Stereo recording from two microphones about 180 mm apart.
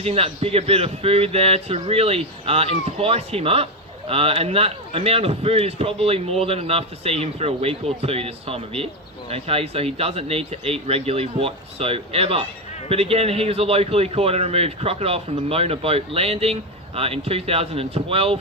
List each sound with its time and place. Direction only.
0.0 s a man's voice: 35° right (ahead or behind)